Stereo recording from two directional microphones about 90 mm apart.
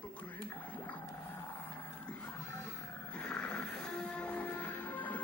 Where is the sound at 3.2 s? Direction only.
10° left (ahead or behind).